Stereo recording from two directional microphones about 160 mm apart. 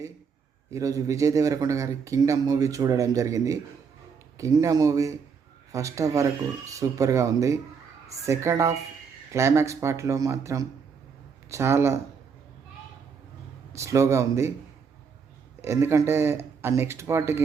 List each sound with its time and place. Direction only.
0.7 s speech: 20° right (ahead or behind)
13.7 s speech: 20° right (ahead or behind)
15.6 s speech: 15° right (ahead or behind)